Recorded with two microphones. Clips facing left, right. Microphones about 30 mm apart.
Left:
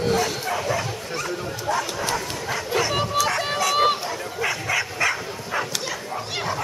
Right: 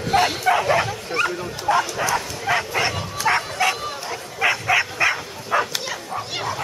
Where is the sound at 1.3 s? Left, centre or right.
Right.